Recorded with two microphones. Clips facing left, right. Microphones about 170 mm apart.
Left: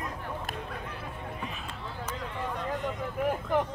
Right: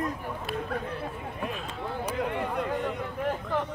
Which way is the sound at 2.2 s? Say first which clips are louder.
Right 7 dB; 65° right (ahead or behind).